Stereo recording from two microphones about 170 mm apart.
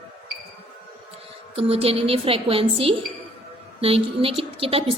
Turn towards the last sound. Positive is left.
turn(degrees=-35)  # may be behind; listen again after turning